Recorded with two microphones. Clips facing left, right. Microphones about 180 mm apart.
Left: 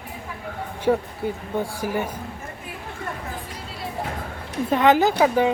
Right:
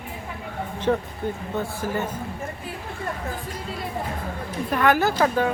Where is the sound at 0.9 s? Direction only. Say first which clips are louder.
Left 2 dB; 10° left (ahead or behind).